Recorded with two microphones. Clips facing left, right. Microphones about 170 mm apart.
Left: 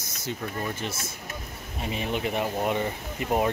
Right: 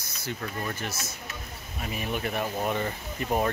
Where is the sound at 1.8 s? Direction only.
25° left (ahead or behind).